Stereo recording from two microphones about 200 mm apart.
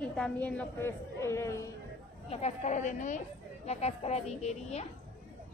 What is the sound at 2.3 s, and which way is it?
Speech, 35° left (ahead or behind).